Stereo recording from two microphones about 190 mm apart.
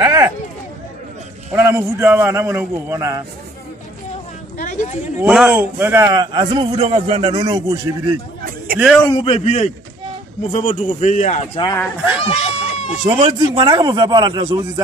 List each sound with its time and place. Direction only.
0.0 s a sound: 10° right (ahead or behind)
1.5 s a man's voice: 10° right (ahead or behind)
4.6 s a sound: 40° left (ahead or behind)
5.2 s a man's voice: 5° right (ahead or behind)
8.7 s a man's voice: 5° right (ahead or behind)
9.0 s a man's voice: 30° left (ahead or behind)
11.5 s speech: 25° left (ahead or behind)
12.3 s a sound: 35° left (ahead or behind)
13.2 s a man's voice: 20° right (ahead or behind)